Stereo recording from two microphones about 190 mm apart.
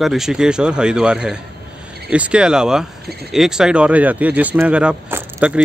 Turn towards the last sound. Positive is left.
turn(degrees=-5)  # may be behind; listen again after turning